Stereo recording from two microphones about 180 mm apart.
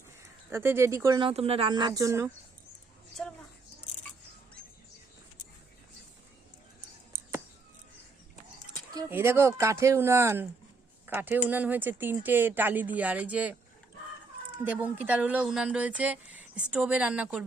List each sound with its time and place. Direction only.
0.5 s speech: 15° right (ahead or behind)
1.2 s speech: 35° right (ahead or behind); by 2.3 s 15° right (ahead or behind)
3.2 s speech: 5° left (ahead or behind)
9.0 s speech: 15° right (ahead or behind)
14.6 s speech: 10° right (ahead or behind)